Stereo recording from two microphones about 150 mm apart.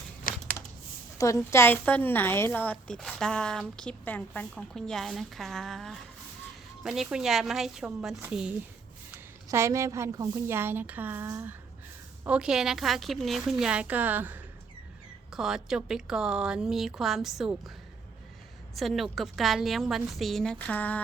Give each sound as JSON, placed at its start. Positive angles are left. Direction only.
{"t": 0.3, "sound": "a sound", "side_deg": 70}
{"t": 1.2, "sound": "a woman's voice", "side_deg": 20}
{"t": 9.1, "sound": "a woman's voice", "side_deg": -20}
{"t": 18.8, "sound": "a woman's voice", "side_deg": 0}